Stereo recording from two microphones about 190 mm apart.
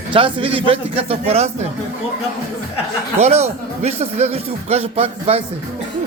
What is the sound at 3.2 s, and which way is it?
Speech, 35° right (ahead or behind).